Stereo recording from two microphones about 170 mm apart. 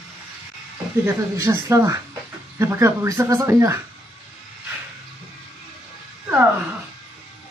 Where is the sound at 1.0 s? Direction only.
15° right (ahead or behind).